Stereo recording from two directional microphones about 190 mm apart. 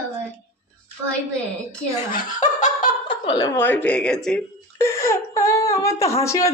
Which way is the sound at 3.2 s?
20° left (ahead or behind).